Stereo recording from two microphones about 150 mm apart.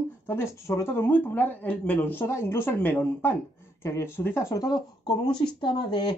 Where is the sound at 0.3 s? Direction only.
20° left (ahead or behind).